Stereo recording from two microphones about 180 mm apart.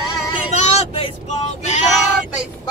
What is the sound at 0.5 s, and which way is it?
Vehicle, 35° left (ahead or behind).